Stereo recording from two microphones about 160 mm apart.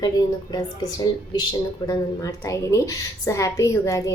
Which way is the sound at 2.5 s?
20° left (ahead or behind).